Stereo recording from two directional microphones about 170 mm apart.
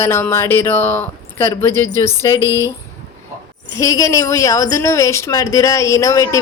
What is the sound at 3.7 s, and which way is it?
A woman's voice, 20° left (ahead or behind).